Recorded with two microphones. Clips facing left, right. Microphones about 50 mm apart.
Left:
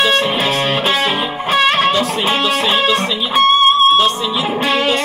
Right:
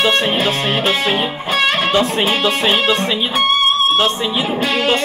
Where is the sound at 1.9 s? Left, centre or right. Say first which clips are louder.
Even; right.